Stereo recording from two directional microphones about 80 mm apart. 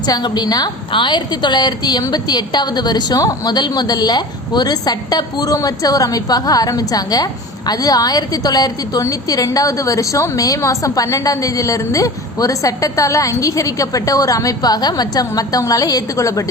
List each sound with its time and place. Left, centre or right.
0.1 s a woman's voice: left
0.9 s a woman's voice: left